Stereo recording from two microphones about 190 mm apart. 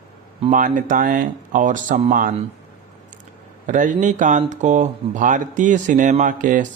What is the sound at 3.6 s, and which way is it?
Speech, 40° right (ahead or behind).